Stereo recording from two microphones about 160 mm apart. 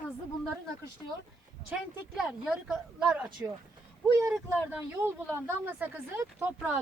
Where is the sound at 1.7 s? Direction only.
5° right (ahead or behind).